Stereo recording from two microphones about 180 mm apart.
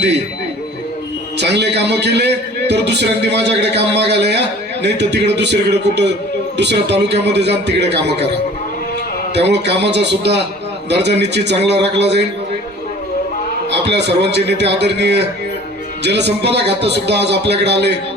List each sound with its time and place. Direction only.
1.4 s a man's voice: 70° right (ahead or behind)
13.7 s a man's voice: 70° right (ahead or behind)